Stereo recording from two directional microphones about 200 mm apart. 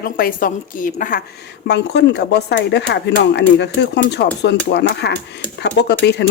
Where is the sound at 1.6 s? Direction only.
60° left (ahead or behind).